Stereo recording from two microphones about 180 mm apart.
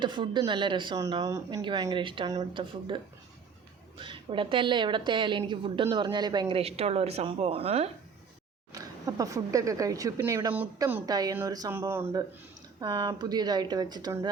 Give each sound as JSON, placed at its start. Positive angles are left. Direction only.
{"t": 0.0, "sound": "a woman's voice", "side_deg": -25}
{"t": 8.7, "sound": "a woman's voice", "side_deg": -20}
{"t": 12.8, "sound": "a woman's voice", "side_deg": -25}